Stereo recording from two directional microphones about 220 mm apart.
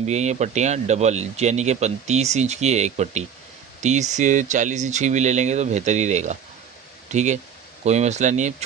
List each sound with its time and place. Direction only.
0.0 s speech: 30° right (ahead or behind)